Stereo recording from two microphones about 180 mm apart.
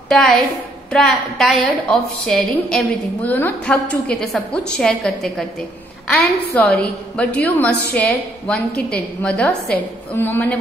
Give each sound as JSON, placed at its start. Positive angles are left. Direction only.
{"t": 0.1, "sound": "a woman's voice", "side_deg": 0}